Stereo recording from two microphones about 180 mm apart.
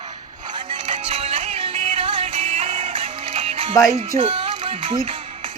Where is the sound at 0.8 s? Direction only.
30° right (ahead or behind).